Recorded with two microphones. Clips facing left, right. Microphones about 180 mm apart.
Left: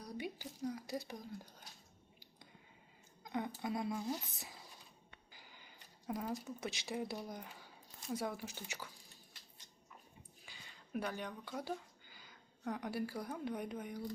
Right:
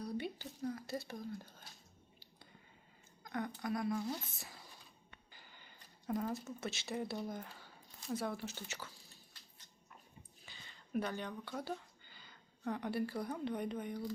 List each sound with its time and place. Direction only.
0.2 s speech: 10° left (ahead or behind)
3.6 s speech: 25° left (ahead or behind)
3.9 s speech: 10° left (ahead or behind)
10.4 s speech: 10° left (ahead or behind)